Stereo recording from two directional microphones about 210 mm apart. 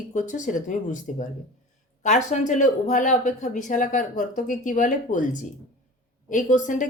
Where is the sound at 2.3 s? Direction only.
35° left (ahead or behind).